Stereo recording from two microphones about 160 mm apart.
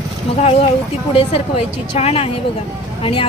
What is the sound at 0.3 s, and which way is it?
A woman's voice, 40° left (ahead or behind).